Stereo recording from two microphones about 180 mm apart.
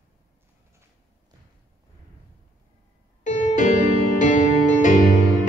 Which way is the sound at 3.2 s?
45° left (ahead or behind).